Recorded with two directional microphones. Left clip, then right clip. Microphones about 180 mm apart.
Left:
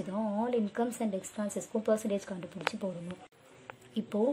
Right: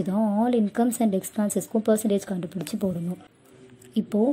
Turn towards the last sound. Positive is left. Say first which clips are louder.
# right 6 dB
turn(degrees=-15)  # may be behind; listen again after turning